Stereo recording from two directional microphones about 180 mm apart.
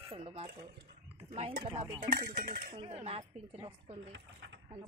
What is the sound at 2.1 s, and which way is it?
Speech, 55° right (ahead or behind).